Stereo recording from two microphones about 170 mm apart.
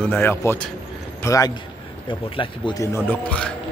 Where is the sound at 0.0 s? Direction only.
10° left (ahead or behind); by 2.9 s 30° left (ahead or behind).